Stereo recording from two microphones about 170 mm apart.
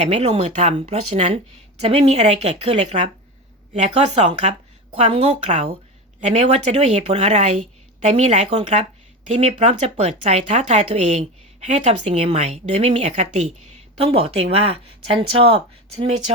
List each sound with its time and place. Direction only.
0.0 s a woman's voice: 40° right (ahead or behind)